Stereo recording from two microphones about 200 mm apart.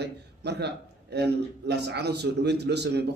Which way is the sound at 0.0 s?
55° right (ahead or behind).